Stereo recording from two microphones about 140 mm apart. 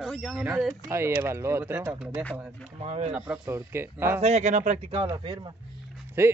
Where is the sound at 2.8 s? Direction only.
55° right (ahead or behind).